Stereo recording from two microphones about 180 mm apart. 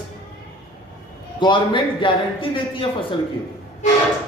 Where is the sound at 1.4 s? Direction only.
25° left (ahead or behind).